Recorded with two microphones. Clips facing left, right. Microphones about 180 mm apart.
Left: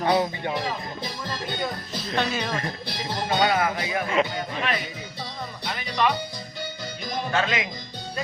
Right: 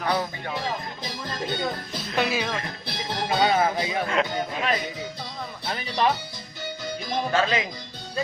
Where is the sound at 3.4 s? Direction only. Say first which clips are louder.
Right 3 dB; 25° right (ahead or behind).